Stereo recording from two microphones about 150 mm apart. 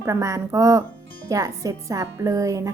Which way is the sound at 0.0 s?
20° right (ahead or behind).